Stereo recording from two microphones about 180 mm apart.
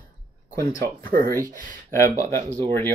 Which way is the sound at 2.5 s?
25° right (ahead or behind).